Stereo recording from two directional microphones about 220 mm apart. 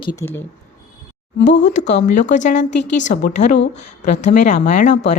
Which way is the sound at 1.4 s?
35° left (ahead or behind).